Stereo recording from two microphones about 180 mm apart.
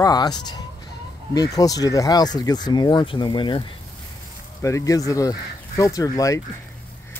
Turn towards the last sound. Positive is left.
turn(degrees=20)  # may be behind; listen again after turning